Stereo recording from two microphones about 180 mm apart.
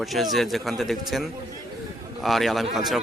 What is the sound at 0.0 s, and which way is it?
A man's voice, centre (ahead or behind).